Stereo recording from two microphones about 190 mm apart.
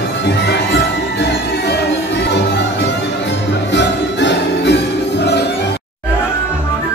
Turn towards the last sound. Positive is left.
turn(degrees=65)  # may be behind; listen again after turning